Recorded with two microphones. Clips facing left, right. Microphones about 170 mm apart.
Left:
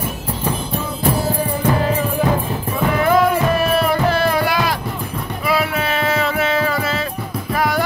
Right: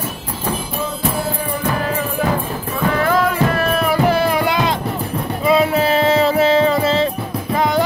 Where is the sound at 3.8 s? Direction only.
10° right (ahead or behind).